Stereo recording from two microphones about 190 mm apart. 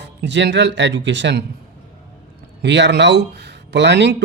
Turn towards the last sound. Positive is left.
turn(degrees=-65)  # may be behind; listen again after turning